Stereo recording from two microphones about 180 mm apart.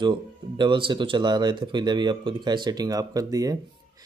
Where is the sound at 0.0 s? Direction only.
25° right (ahead or behind).